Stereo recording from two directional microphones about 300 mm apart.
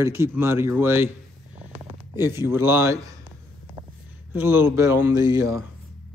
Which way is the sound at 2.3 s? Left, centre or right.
Centre.